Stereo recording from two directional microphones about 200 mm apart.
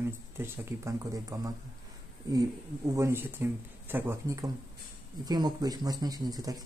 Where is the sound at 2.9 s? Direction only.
15° right (ahead or behind).